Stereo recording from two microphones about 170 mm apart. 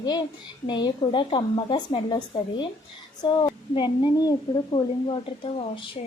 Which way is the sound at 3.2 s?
25° left (ahead or behind).